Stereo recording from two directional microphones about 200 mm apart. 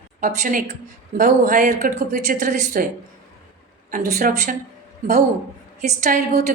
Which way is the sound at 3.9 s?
45° right (ahead or behind).